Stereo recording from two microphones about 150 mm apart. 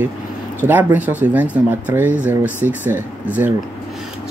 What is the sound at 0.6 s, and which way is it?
Speech, 10° right (ahead or behind).